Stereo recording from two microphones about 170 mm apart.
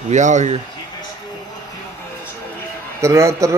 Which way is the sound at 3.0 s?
15° right (ahead or behind).